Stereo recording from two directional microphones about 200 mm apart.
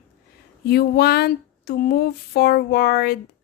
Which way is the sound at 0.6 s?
50° left (ahead or behind).